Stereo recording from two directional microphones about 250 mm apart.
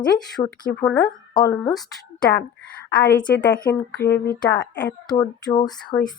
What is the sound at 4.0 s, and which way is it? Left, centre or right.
Speech, left.